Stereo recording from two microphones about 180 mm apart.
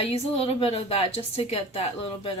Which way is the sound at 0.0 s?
35° left (ahead or behind).